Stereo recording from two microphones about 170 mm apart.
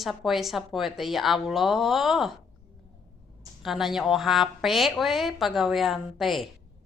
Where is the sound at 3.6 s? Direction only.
Centre (ahead or behind).